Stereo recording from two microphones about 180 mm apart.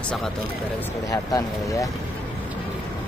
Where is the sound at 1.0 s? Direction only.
20° left (ahead or behind).